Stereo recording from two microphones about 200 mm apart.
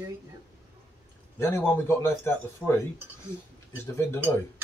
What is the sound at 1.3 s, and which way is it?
A man's voice, 10° left (ahead or behind).